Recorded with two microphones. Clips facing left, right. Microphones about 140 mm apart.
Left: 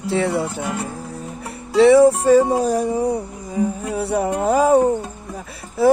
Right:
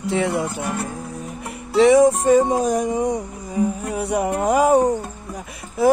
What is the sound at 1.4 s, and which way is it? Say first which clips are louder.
Music: left 2 dB; 35° left (ahead or behind).